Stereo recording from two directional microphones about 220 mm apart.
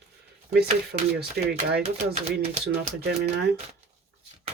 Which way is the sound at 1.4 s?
50° right (ahead or behind).